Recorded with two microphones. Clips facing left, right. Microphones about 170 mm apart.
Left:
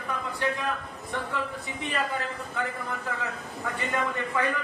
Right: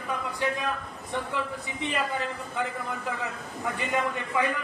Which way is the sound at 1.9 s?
15° right (ahead or behind).